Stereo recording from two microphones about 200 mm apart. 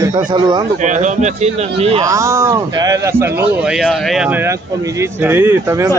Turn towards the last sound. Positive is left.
turn(degrees=-15)  # may be behind; listen again after turning